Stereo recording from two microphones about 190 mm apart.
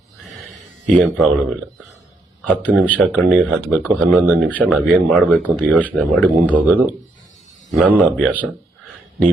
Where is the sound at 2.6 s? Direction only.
5° left (ahead or behind).